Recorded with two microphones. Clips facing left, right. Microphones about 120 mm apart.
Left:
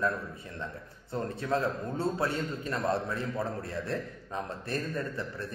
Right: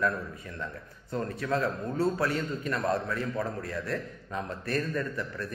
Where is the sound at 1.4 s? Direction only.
25° left (ahead or behind).